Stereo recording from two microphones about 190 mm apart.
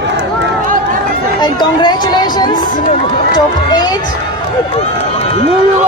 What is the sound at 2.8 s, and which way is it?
Speech, 40° left (ahead or behind).